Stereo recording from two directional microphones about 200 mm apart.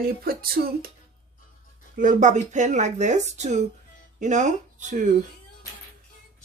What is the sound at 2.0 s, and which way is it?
Speech, 40° right (ahead or behind).